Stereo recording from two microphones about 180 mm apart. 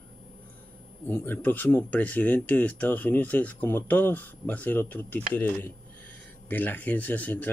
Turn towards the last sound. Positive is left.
turn(degrees=10)  # may be behind; listen again after turning